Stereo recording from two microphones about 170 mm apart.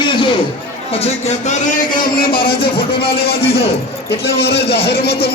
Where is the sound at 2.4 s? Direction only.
65° left (ahead or behind).